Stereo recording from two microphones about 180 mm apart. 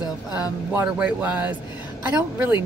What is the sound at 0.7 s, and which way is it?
A woman's voice, 10° right (ahead or behind).